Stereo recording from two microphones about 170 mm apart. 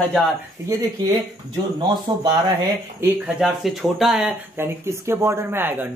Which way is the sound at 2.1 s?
25° right (ahead or behind).